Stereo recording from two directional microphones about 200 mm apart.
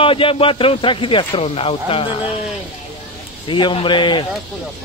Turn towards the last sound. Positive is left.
turn(degrees=25)  # may be behind; listen again after turning